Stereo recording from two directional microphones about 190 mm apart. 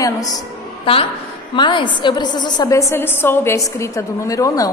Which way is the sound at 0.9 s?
30° left (ahead or behind).